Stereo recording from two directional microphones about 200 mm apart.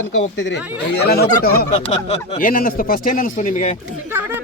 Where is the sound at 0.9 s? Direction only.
50° left (ahead or behind).